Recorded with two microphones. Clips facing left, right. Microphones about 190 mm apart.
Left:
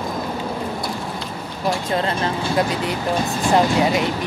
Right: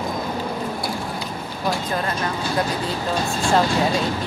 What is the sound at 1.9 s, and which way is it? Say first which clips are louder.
Speech: left 3 dB; 25° left (ahead or behind).